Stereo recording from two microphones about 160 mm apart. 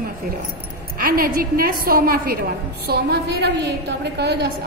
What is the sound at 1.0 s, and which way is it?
A woman's voice, 65° right (ahead or behind).